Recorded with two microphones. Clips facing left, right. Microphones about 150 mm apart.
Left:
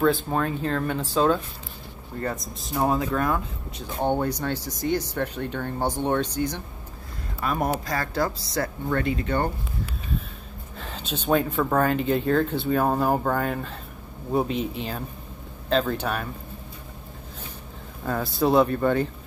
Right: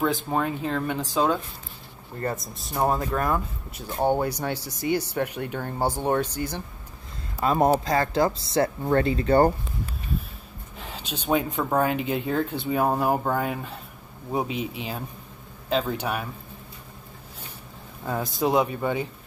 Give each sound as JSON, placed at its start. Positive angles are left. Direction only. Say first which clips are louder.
{"t": 0.0, "sound": "speech", "louder": "left 2 dB", "side_deg": -10}
{"t": 2.2, "sound": "speech", "louder": "right 1 dB", "side_deg": 0}
{"t": 7.4, "sound": "speech", "louder": "right 5 dB", "side_deg": -25}
{"t": 10.8, "sound": "speech", "louder": "left 2 dB", "side_deg": -10}
{"t": 18.0, "sound": "speech", "louder": "left 2 dB", "side_deg": -15}